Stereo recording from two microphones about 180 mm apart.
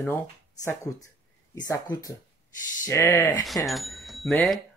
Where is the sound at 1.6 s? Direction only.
20° left (ahead or behind).